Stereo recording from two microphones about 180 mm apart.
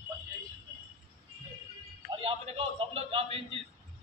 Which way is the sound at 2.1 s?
30° right (ahead or behind).